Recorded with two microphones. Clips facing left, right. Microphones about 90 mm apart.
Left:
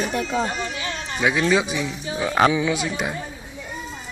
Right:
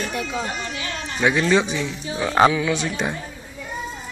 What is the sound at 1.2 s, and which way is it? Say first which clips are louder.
Speech: right 1 dB; 5° left (ahead or behind).